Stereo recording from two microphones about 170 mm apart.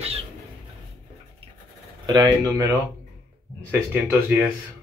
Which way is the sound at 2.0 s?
25° right (ahead or behind).